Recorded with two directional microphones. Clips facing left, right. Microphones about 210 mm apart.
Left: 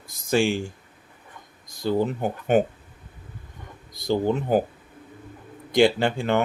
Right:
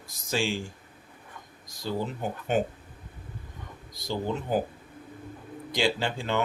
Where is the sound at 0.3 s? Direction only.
55° left (ahead or behind).